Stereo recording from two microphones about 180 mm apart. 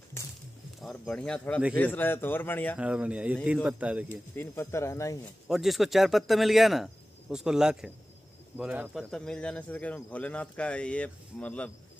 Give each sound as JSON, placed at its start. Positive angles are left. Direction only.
{"t": 0.7, "sound": "speech", "side_deg": 0}
{"t": 2.8, "sound": "speech", "side_deg": -5}
{"t": 4.4, "sound": "speech", "side_deg": 15}
{"t": 5.5, "sound": "speech", "side_deg": 0}
{"t": 9.1, "sound": "speech", "side_deg": 5}